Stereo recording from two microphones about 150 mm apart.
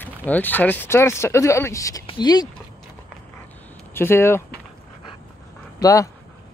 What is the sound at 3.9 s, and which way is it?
Speech, 15° left (ahead or behind).